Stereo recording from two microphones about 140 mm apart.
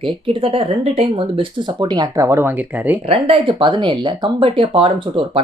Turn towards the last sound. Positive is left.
turn(degrees=-40)  # may be behind; listen again after turning